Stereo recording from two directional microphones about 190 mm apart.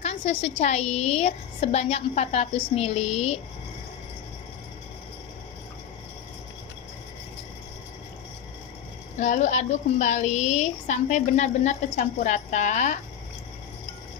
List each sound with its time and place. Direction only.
0.0 s a woman's voice: 35° left (ahead or behind)
9.2 s a woman's voice: 40° left (ahead or behind)